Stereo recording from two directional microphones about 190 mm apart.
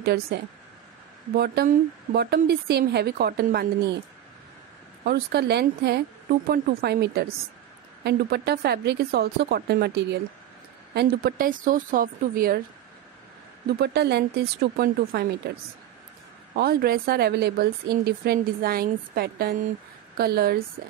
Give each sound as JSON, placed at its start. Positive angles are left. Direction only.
{"t": 0.0, "sound": "a woman's voice", "side_deg": -55}
{"t": 5.0, "sound": "a woman's voice", "side_deg": -55}
{"t": 11.0, "sound": "speech", "side_deg": -50}
{"t": 13.7, "sound": "a woman's voice", "side_deg": -60}
{"t": 16.5, "sound": "a woman's voice", "side_deg": -55}